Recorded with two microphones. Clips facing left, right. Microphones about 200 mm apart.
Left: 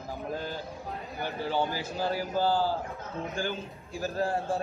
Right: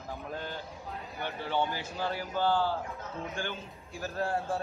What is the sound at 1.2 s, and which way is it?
Speech, 35° left (ahead or behind).